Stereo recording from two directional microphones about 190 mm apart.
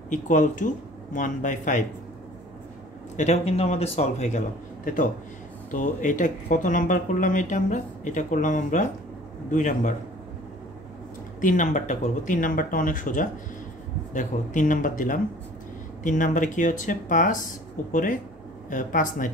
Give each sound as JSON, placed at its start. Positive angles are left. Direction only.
{"t": 0.1, "sound": "speech", "side_deg": 40}
{"t": 3.2, "sound": "a man's voice", "side_deg": 35}
{"t": 11.4, "sound": "speech", "side_deg": 40}